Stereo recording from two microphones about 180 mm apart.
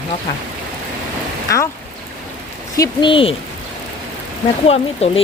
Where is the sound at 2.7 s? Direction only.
20° left (ahead or behind).